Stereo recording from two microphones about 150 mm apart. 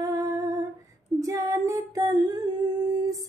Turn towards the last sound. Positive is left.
turn(degrees=-25)  # may be behind; listen again after turning